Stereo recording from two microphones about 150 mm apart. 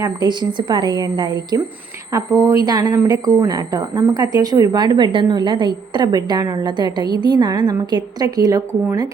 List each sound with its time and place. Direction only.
0.0 s speech: 30° right (ahead or behind)